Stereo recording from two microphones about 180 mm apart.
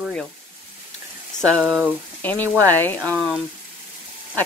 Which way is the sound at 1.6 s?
5° right (ahead or behind).